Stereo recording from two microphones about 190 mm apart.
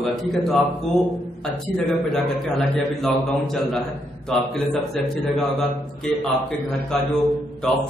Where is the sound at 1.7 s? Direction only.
5° left (ahead or behind).